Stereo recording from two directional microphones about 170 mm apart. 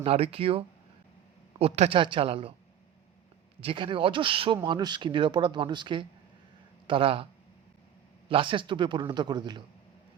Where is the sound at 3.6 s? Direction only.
30° right (ahead or behind).